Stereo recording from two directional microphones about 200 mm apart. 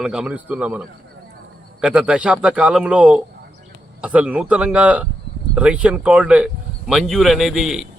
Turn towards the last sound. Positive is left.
turn(degrees=0)  # may be behind; listen again after turning